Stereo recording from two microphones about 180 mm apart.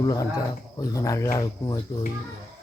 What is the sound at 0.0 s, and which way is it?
Speech, 20° left (ahead or behind).